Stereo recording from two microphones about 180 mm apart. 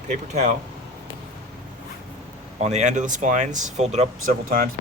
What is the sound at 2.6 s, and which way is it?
Speech, 40° right (ahead or behind).